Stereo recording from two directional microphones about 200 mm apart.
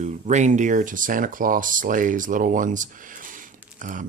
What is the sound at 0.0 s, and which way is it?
Speech, 35° right (ahead or behind).